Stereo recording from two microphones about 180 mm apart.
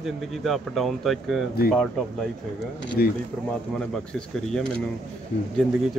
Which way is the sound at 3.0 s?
55° left (ahead or behind).